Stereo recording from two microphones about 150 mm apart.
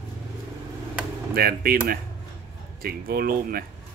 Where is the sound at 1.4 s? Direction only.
90° right.